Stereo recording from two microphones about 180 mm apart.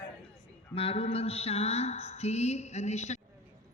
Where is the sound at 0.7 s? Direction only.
35° left (ahead or behind).